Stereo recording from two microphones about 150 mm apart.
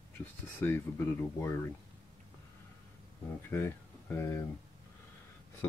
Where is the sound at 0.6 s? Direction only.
15° left (ahead or behind).